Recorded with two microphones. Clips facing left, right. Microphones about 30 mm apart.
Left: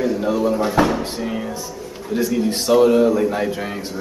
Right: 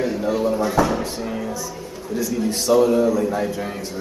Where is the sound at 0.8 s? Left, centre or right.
Left.